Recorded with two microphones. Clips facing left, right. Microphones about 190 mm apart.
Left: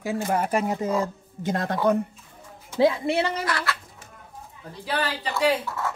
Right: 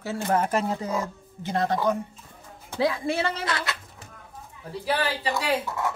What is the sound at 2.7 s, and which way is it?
Speech, 25° left (ahead or behind).